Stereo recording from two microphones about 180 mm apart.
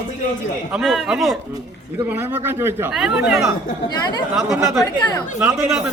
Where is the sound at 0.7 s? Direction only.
Centre (ahead or behind).